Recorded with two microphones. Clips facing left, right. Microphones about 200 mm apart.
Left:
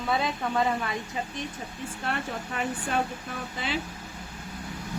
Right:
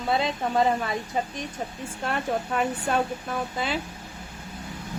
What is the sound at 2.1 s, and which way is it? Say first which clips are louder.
Speech: right 6 dB; 45° right (ahead or behind).